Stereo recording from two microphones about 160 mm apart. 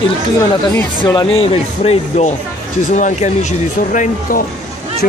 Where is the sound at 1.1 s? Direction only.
35° left (ahead or behind); by 4.4 s 55° left (ahead or behind).